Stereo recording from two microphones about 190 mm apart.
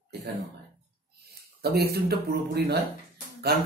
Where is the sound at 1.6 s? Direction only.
55° right (ahead or behind).